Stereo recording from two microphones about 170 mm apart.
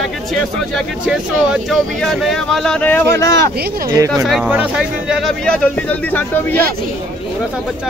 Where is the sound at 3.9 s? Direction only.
20° right (ahead or behind).